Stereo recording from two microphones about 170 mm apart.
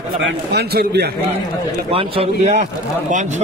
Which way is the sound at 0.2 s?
80° right.